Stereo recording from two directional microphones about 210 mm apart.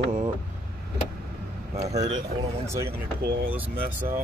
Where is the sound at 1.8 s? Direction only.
30° right (ahead or behind).